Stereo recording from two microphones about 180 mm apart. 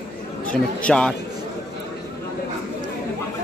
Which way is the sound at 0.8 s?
5° left (ahead or behind).